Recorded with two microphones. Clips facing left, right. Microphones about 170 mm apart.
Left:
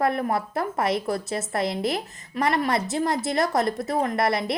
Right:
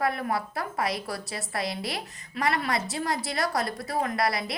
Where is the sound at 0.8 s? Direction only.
25° left (ahead or behind).